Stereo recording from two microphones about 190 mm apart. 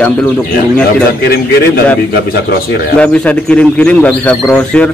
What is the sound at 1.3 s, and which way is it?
Speech, 55° left (ahead or behind).